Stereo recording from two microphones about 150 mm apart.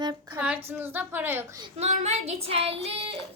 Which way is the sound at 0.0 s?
30° right (ahead or behind).